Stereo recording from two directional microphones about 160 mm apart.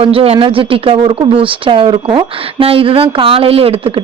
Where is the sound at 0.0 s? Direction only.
35° right (ahead or behind).